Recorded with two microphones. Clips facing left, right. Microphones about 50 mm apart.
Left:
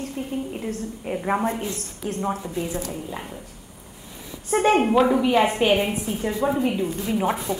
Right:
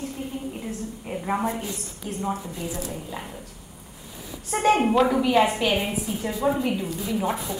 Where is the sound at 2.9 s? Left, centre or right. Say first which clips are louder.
Left 2 dB; centre.